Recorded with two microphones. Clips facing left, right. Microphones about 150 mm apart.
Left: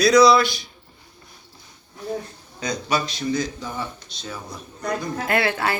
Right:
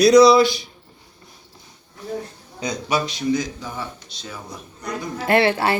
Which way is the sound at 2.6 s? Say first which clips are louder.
Right 1 dB; 15° right (ahead or behind).